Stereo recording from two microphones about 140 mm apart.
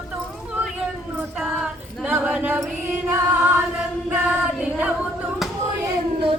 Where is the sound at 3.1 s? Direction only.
15° right (ahead or behind).